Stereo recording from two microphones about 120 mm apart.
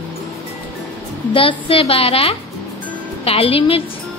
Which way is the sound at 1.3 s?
50° left (ahead or behind).